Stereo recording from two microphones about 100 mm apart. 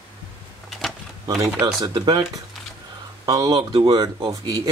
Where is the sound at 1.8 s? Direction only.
45° right (ahead or behind).